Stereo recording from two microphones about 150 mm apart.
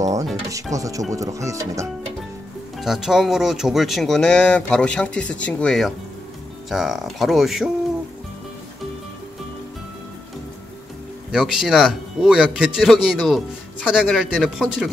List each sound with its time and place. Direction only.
0.5 s speech: 20° right (ahead or behind)
2.8 s speech: 5° right (ahead or behind)
11.3 s speech: centre (ahead or behind)